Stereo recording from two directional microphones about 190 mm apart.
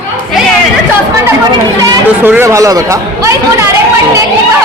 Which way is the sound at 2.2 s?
10° right (ahead or behind).